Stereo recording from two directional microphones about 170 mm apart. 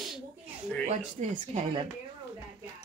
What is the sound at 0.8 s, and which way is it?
Speech, 45° right (ahead or behind).